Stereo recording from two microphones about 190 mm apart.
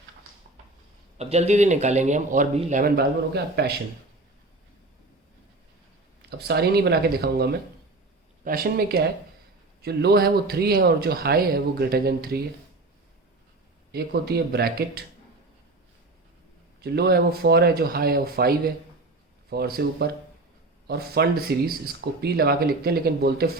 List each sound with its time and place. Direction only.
1.2 s speech: 35° right (ahead or behind); by 3.8 s 60° right (ahead or behind)
6.5 s speech: 60° right (ahead or behind)
13.9 s speech: 55° right (ahead or behind)
16.8 s speech: 60° right (ahead or behind)